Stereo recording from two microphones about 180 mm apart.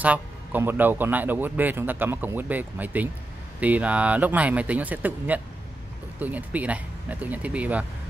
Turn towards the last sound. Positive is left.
turn(degrees=-10)  # may be behind; listen again after turning